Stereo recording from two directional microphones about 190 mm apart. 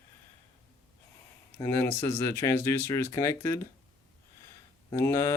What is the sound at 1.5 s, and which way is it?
Speech, 25° left (ahead or behind).